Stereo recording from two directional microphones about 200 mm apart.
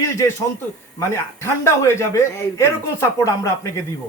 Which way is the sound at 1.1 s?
15° left (ahead or behind).